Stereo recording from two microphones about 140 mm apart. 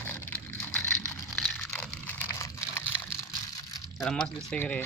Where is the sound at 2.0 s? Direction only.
20° left (ahead or behind).